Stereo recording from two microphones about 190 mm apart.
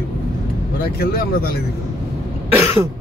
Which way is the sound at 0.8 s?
50° left (ahead or behind).